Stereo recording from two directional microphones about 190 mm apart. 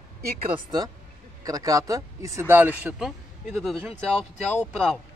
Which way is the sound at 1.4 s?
20° right (ahead or behind).